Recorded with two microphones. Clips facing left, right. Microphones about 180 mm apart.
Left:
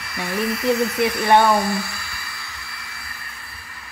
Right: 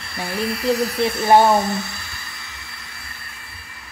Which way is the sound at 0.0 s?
30° right (ahead or behind).